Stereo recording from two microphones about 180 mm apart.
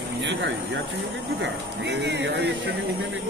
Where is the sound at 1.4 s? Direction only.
70° right (ahead or behind).